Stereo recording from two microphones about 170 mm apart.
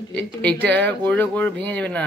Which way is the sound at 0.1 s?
10° left (ahead or behind).